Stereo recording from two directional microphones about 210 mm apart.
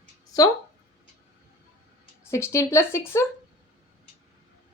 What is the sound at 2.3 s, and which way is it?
Speech, 15° left (ahead or behind).